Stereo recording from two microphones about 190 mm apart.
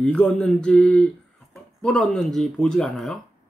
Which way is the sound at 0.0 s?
5° left (ahead or behind).